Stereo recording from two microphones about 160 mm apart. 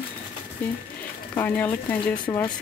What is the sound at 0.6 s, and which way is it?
Speech, 10° left (ahead or behind).